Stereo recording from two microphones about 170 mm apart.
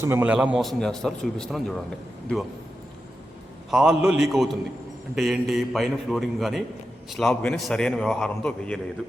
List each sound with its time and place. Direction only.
0.0 s a man's voice: 15° right (ahead or behind); by 1.7 s centre (ahead or behind)
3.7 s a man's voice: 5° right (ahead or behind)